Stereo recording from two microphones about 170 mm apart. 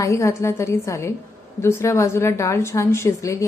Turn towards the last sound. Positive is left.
turn(degrees=15)  # may be behind; listen again after turning